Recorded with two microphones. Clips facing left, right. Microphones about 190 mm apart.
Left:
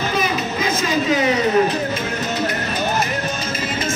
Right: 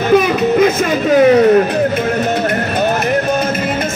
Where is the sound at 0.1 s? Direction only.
60° right (ahead or behind).